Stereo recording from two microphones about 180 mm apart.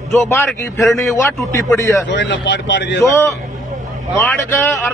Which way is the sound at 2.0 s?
80° left.